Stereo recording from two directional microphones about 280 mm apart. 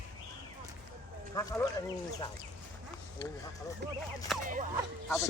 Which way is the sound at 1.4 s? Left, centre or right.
Centre.